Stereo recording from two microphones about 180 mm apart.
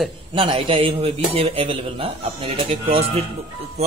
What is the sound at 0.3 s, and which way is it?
A man's voice, 30° right (ahead or behind).